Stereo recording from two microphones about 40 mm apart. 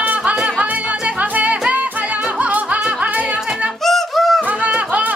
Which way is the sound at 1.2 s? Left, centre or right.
Right.